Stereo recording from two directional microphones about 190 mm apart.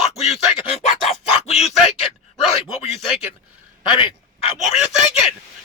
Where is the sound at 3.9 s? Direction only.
30° left (ahead or behind).